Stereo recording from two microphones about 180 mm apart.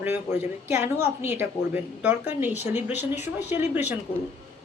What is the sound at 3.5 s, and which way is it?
Speech, 10° right (ahead or behind).